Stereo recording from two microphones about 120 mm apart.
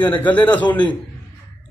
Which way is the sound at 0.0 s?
15° left (ahead or behind).